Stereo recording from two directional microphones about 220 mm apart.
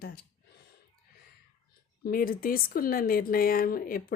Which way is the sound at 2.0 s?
40° left (ahead or behind).